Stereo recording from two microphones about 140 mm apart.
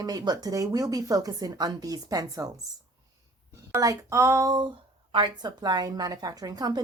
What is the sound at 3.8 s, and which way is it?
Speech, 25° right (ahead or behind).